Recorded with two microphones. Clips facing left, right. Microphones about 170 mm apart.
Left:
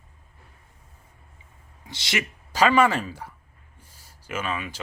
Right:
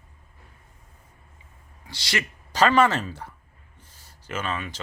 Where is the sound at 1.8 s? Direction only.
20° left (ahead or behind).